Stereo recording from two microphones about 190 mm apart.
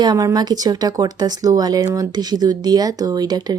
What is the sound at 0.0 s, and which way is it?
Speech, 20° right (ahead or behind).